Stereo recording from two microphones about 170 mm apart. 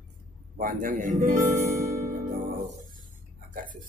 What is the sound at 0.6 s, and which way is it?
Speech, 55° right (ahead or behind).